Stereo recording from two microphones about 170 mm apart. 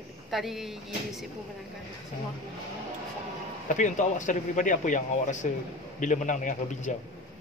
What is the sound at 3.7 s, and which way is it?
Speech, 45° left (ahead or behind).